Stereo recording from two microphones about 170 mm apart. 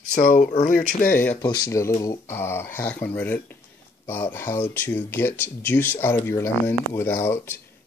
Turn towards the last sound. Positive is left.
turn(degrees=15)  # may be behind; listen again after turning